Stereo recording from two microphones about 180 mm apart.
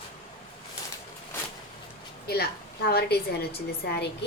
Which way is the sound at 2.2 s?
60° left (ahead or behind).